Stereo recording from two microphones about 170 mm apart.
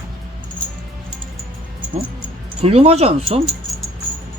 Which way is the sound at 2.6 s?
35° right (ahead or behind).